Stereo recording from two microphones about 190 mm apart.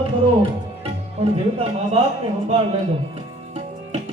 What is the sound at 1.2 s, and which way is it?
Speech, 35° right (ahead or behind).